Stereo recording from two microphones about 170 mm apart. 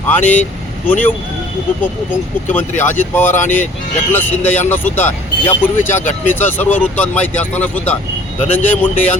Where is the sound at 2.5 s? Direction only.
10° left (ahead or behind).